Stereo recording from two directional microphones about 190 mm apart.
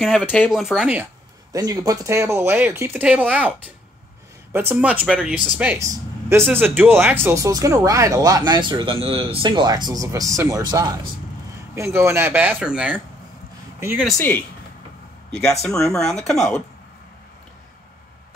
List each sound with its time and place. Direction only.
0.0 s speech: centre (ahead or behind)
1.5 s speech: 20° right (ahead or behind)
14.1 s speech: 10° left (ahead or behind)